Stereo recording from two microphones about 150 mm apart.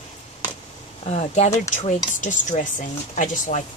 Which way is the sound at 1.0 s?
45° left (ahead or behind).